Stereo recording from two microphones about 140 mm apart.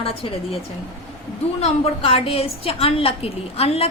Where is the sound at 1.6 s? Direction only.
45° left (ahead or behind).